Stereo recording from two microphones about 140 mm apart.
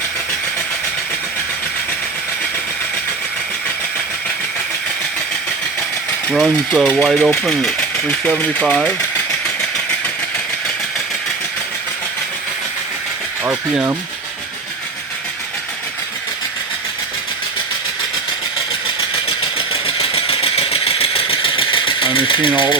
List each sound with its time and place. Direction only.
6.3 s mechanisms: centre (ahead or behind)
6.8 s speech: 5° left (ahead or behind)
19.5 s engine: 40° left (ahead or behind)